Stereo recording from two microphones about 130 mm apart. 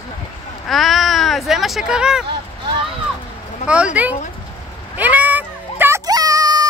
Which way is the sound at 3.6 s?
60° left (ahead or behind).